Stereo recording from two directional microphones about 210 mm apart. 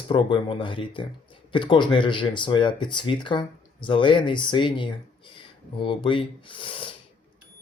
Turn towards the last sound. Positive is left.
turn(degrees=25)  # may be behind; listen again after turning